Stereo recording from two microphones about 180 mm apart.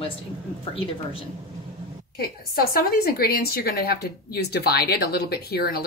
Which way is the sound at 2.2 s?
55° left (ahead or behind).